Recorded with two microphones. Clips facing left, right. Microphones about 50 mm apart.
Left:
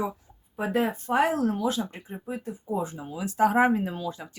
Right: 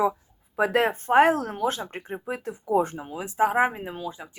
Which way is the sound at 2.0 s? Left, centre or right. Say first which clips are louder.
Right 3 dB; right.